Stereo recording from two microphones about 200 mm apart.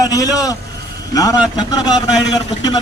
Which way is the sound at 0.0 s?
15° left (ahead or behind).